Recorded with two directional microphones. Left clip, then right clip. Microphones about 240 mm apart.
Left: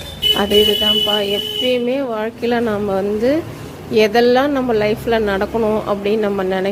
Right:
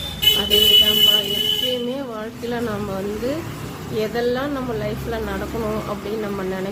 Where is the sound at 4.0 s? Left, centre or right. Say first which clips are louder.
Left 10 dB; left.